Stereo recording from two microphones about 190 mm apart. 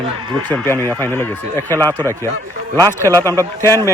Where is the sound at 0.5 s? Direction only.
10° left (ahead or behind).